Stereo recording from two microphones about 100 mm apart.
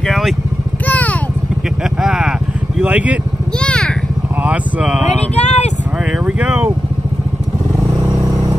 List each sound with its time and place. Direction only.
0.0 s vehicle: 5° left (ahead or behind)
0.8 s vehicle: 15° left (ahead or behind)
2.0 s vehicle: 5° right (ahead or behind)
2.8 s speech: 15° right (ahead or behind)
3.5 s vehicle: 10° left (ahead or behind)
4.4 s speech: 10° right (ahead or behind)
5.3 s a sound: 90° left
6.1 s vehicle: 10° right (ahead or behind)